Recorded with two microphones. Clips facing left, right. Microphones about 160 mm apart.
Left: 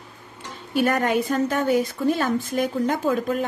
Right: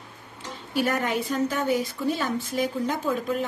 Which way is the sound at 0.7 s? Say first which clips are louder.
Left 4 dB; 55° left (ahead or behind).